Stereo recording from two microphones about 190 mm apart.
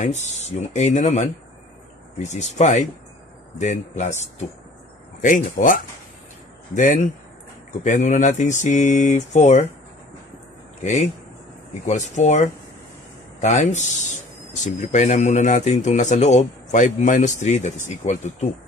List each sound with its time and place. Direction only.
0.0 s a man's voice: 35° left (ahead or behind)
10.8 s a man's voice: 40° left (ahead or behind)